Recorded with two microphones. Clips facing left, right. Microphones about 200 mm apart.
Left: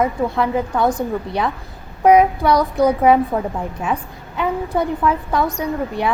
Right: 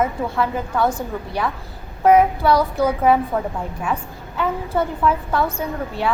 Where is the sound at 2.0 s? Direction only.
15° left (ahead or behind).